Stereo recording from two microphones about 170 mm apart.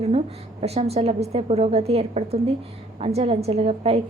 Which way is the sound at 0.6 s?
35° right (ahead or behind).